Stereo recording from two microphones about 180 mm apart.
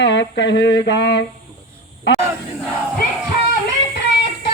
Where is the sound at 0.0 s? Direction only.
75° left (ahead or behind).